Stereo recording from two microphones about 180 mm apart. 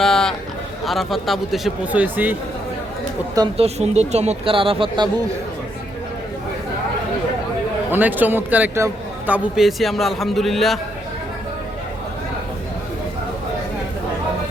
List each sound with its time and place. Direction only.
0.0 s a sound: centre (ahead or behind)
0.9 s speech: centre (ahead or behind)
3.6 s speech: 35° right (ahead or behind)
7.9 s a man's voice: 10° right (ahead or behind)